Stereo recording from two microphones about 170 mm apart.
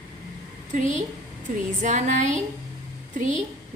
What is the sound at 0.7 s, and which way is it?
A woman's voice, 45° right (ahead or behind).